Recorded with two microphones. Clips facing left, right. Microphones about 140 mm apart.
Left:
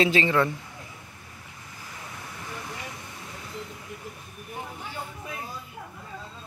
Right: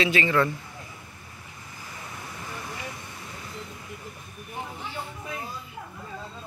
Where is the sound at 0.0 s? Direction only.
35° left (ahead or behind).